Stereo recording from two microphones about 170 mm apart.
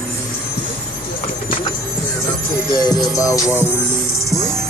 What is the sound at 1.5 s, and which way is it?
Music, 30° left (ahead or behind).